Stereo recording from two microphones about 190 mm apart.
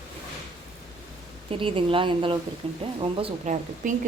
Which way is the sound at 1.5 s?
30° right (ahead or behind).